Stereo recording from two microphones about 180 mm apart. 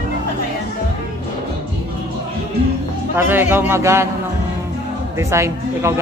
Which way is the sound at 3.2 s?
10° right (ahead or behind).